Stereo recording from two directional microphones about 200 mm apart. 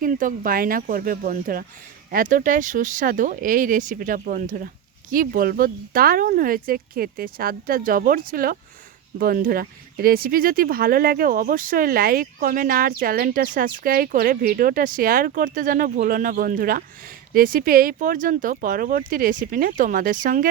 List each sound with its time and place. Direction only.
0.0 s speech: 40° right (ahead or behind)